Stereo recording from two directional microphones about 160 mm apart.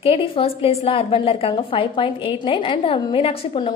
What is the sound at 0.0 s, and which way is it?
A woman's voice, 35° left (ahead or behind).